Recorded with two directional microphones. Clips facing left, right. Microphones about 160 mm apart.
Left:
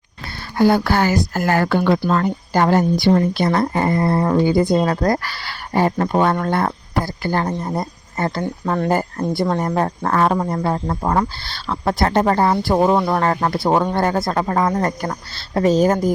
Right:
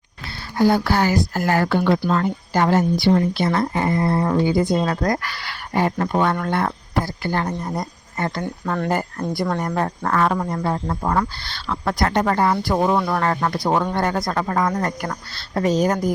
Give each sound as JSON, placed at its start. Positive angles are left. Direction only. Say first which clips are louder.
{"t": 0.6, "sound": "speech", "louder": "left 2 dB", "side_deg": 60}
{"t": 2.5, "sound": "speech", "louder": "left 2 dB", "side_deg": 40}